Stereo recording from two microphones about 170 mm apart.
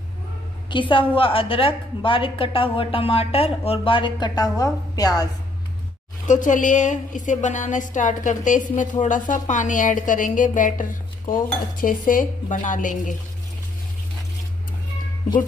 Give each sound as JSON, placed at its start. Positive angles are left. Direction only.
{"t": 0.7, "sound": "a woman's voice", "side_deg": 30}
{"t": 6.2, "sound": "a woman's voice", "side_deg": 50}